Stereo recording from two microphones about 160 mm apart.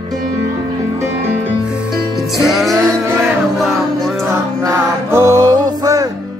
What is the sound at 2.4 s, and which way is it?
Music, centre (ahead or behind).